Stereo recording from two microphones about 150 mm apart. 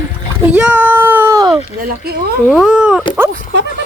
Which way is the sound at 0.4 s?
10° right (ahead or behind).